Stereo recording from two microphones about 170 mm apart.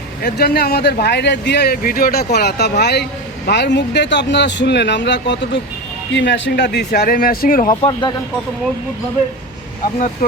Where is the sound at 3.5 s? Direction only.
90° left; by 7.6 s 60° left (ahead or behind).